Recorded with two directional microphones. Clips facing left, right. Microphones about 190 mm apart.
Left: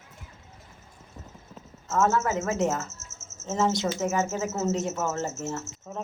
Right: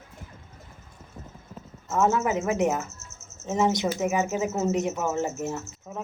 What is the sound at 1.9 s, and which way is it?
Speech, 15° right (ahead or behind).